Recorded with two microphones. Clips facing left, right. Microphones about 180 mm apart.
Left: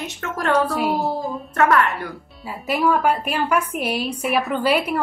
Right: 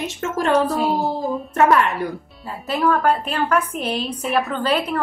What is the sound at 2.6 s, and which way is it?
A woman's voice, 10° left (ahead or behind).